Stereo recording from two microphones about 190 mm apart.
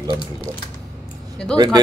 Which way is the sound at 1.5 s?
20° right (ahead or behind).